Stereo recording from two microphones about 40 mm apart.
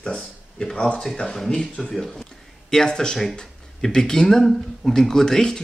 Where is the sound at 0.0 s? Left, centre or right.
Centre.